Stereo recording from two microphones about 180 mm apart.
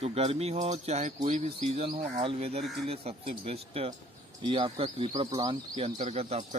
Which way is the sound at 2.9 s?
35° right (ahead or behind).